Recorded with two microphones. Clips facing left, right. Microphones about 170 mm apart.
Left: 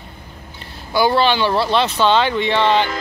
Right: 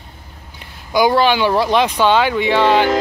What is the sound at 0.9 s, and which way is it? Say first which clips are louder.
Speech: right 2 dB; 15° right (ahead or behind).